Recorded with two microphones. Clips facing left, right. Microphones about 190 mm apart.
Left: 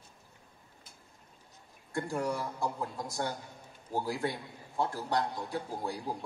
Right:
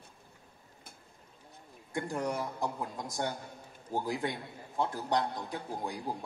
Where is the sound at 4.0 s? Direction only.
20° right (ahead or behind).